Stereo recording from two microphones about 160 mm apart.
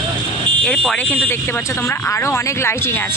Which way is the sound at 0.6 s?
5° left (ahead or behind).